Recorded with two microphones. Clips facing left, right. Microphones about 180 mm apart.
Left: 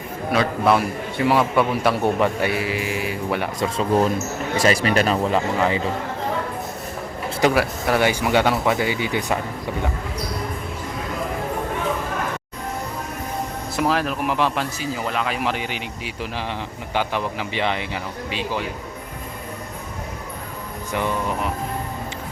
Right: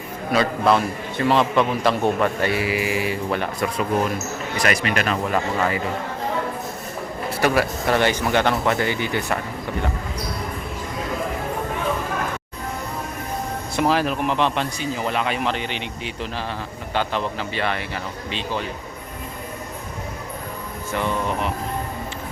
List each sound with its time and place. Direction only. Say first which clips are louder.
0.3 s a man's voice: even; 5° left (ahead or behind)
2.6 s mantra: right 2 dB; 10° right (ahead or behind)
3.2 s a man's voice: even; 10° left (ahead or behind)
3.8 s speech: left 4 dB; 30° left (ahead or behind)
5.3 s speech: left 2 dB; 20° left (ahead or behind)
7.5 s a man's voice: even; 5° left (ahead or behind)
13.7 s a man's voice: right 1 dB; centre (ahead or behind)
20.9 s a man's voice: even; 15° left (ahead or behind)